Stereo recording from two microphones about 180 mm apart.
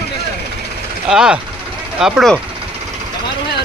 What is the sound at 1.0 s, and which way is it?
Speech, 5° right (ahead or behind).